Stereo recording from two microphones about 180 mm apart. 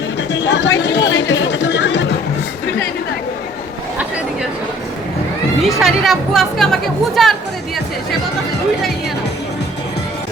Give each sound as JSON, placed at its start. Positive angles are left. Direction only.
{"t": 0.2, "sound": "a sound", "side_deg": 80}
{"t": 0.8, "sound": "chatter", "side_deg": 75}
{"t": 5.6, "sound": "speech", "side_deg": 0}